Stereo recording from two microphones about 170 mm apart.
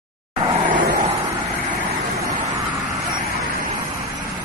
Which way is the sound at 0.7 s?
50° right (ahead or behind).